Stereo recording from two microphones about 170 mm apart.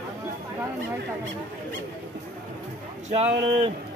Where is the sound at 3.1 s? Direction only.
40° right (ahead or behind).